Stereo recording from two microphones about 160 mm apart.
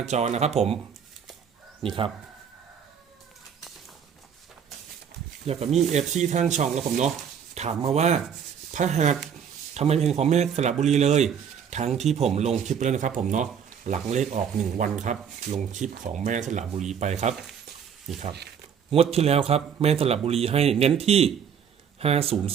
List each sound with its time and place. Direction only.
0.0 s speech: 45° right (ahead or behind)
1.8 s speech: 30° right (ahead or behind)
5.5 s speech: 40° right (ahead or behind)
18.1 s speech: centre (ahead or behind)
18.9 s speech: 40° right (ahead or behind)